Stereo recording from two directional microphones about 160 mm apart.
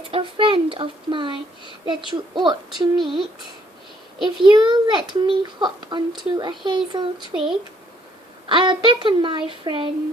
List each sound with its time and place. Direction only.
0.1 s a child's voice: 30° right (ahead or behind)
4.4 s a child's voice: 25° right (ahead or behind)